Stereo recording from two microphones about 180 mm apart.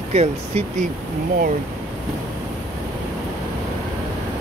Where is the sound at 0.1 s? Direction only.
35° right (ahead or behind).